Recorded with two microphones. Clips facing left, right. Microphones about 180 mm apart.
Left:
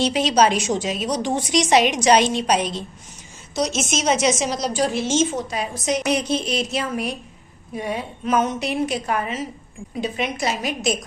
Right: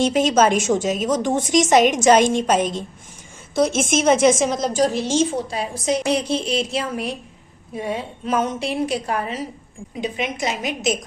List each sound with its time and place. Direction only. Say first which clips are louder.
0.0 s a woman's voice: right 2 dB; 50° right (ahead or behind); by 9.4 s 35° right (ahead or behind)
10.0 s a woman's voice: even; 20° right (ahead or behind)